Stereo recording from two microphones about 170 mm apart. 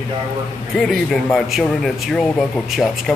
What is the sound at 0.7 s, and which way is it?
Speech, centre (ahead or behind).